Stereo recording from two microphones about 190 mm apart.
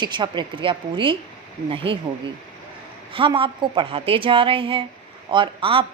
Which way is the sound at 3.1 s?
25° right (ahead or behind).